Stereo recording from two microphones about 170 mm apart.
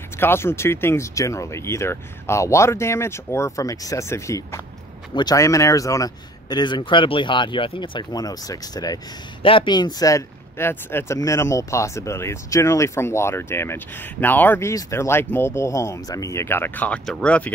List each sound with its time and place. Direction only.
0.2 s speech: 15° left (ahead or behind)